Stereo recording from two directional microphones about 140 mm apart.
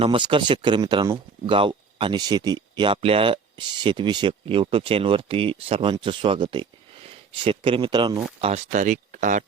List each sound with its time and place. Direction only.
0.0 s speech: 40° right (ahead or behind)
8.4 s speech: 45° right (ahead or behind)
8.7 s speech: 65° right (ahead or behind)